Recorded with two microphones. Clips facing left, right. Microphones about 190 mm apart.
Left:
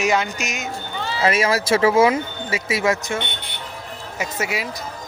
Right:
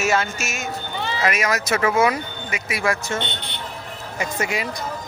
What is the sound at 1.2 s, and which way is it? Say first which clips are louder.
Speech: left 4 dB; 30° left (ahead or behind).